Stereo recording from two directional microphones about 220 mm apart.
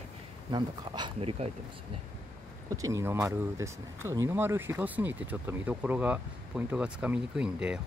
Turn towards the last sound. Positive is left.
turn(degrees=-5)  # may be behind; listen again after turning